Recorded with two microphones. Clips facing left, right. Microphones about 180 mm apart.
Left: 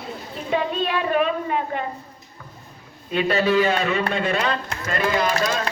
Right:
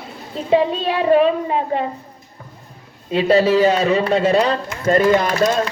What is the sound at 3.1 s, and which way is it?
A man's voice, 30° right (ahead or behind).